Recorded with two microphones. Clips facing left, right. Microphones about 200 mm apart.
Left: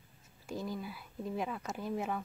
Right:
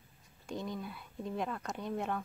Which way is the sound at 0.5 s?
5° left (ahead or behind).